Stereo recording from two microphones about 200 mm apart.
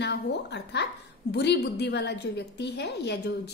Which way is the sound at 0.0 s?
60° left (ahead or behind).